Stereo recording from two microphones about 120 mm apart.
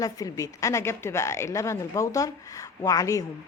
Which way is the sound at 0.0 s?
30° left (ahead or behind).